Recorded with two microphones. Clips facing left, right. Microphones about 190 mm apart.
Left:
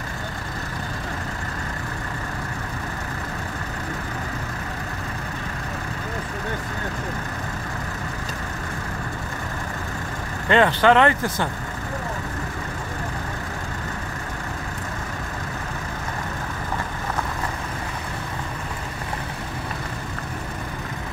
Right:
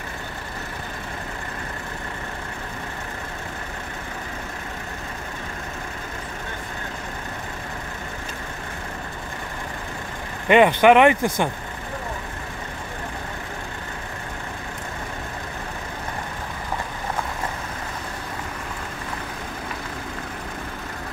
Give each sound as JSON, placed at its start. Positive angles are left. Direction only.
{"t": 10.5, "sound": "speech", "side_deg": -15}